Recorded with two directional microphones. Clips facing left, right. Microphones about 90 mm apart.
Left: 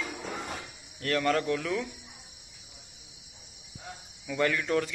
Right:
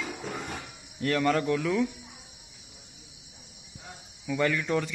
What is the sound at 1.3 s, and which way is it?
Speech, 20° right (ahead or behind).